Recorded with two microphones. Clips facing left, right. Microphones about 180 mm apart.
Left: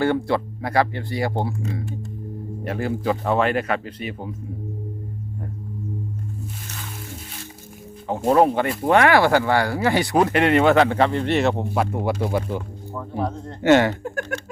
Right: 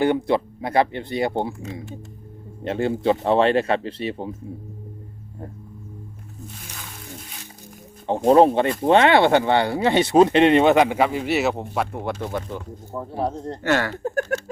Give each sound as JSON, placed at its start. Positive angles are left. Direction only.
{"t": 0.0, "sound": "speech", "side_deg": -20}
{"t": 8.3, "sound": "speech", "side_deg": -25}
{"t": 13.0, "sound": "speech", "side_deg": -35}
{"t": 13.6, "sound": "speech", "side_deg": 20}
{"t": 14.0, "sound": "speech", "side_deg": -40}